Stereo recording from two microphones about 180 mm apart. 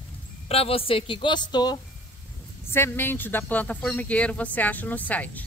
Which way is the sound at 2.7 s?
10° left (ahead or behind).